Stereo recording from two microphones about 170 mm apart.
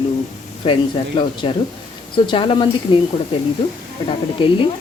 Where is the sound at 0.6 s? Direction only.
30° left (ahead or behind).